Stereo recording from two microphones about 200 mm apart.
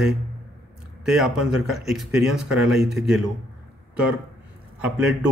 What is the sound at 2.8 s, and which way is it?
Speech, 55° right (ahead or behind).